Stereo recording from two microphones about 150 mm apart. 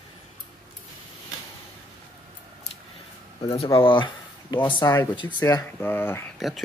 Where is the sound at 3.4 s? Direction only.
40° left (ahead or behind); by 6.2 s 15° left (ahead or behind).